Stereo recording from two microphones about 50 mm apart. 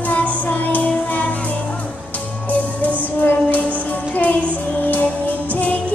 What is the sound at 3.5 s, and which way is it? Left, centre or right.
Music, left.